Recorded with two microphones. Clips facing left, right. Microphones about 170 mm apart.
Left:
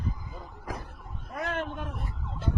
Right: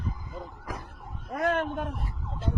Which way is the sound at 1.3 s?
50° right (ahead or behind).